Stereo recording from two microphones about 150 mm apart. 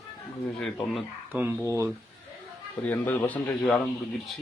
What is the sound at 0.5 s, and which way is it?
Speech, 5° left (ahead or behind).